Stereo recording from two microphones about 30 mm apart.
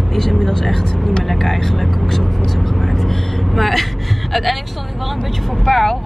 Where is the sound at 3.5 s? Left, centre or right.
Centre.